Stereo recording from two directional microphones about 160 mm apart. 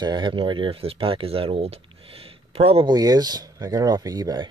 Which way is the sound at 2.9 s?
25° right (ahead or behind).